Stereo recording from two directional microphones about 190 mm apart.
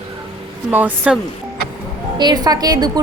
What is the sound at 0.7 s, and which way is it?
Speech, 10° right (ahead or behind).